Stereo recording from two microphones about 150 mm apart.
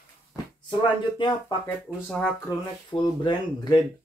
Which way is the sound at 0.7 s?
30° left (ahead or behind).